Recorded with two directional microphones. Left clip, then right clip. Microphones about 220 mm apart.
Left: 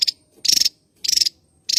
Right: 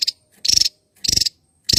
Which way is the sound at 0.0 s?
15° right (ahead or behind).